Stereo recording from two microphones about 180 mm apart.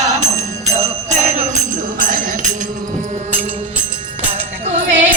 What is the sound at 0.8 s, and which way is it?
Jingle bell, 40° right (ahead or behind).